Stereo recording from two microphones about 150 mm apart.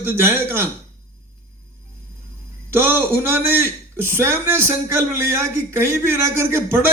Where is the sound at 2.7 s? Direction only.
15° right (ahead or behind).